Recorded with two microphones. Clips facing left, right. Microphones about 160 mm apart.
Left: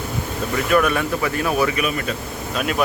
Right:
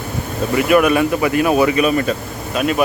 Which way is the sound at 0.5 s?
15° right (ahead or behind).